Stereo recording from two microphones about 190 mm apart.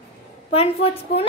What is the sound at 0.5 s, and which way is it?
Speech, 30° left (ahead or behind).